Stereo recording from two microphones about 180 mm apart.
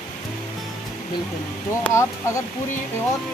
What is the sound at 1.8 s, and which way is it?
Speech, 15° left (ahead or behind).